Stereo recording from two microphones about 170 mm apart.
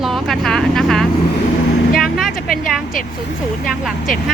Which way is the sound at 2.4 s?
60° left (ahead or behind).